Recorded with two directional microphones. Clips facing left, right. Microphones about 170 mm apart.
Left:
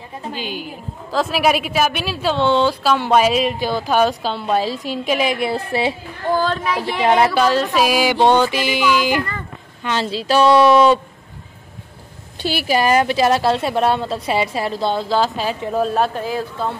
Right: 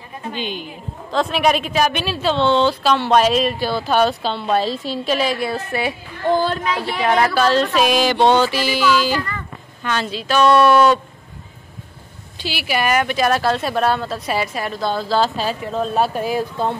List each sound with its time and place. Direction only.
0.3 s a woman's voice: 5° left (ahead or behind); by 5.9 s 30° left (ahead or behind)
6.3 s speech: 10° right (ahead or behind)
6.7 s a woman's voice: 15° left (ahead or behind)
7.4 s a woman's voice: 10° left (ahead or behind)
9.8 s speech: 30° left (ahead or behind)
12.4 s speech: 50° left (ahead or behind)
12.7 s a woman's voice: 30° left (ahead or behind); by 15.9 s 15° left (ahead or behind)
16.2 s speech: 15° right (ahead or behind)